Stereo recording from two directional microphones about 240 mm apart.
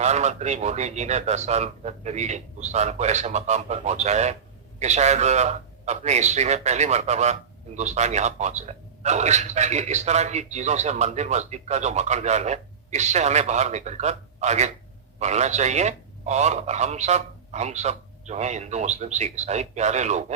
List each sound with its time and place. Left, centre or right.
0.0 s speech: right